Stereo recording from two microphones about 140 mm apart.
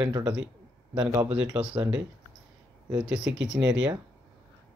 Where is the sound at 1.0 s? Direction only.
25° right (ahead or behind).